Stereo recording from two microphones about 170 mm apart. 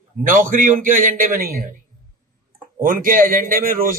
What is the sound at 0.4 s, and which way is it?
A man's voice, 50° right (ahead or behind).